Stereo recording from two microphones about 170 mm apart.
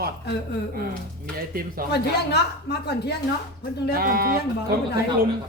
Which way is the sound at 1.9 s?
75° left (ahead or behind).